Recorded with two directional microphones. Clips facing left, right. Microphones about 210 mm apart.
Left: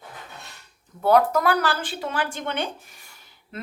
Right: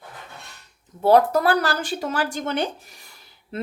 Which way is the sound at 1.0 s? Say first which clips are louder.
Right 2 dB; 30° right (ahead or behind).